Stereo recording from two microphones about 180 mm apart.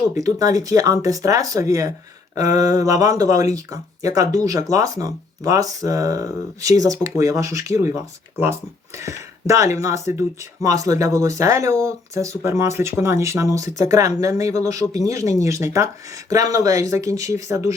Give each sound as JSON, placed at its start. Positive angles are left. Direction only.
{"t": 0.1, "sound": "speech", "side_deg": -20}